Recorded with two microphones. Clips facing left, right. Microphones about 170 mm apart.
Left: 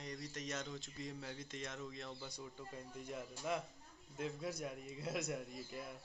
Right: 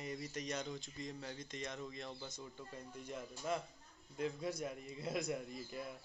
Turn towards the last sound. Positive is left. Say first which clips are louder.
# right 2 dB
turn(degrees=0)  # may be behind; listen again after turning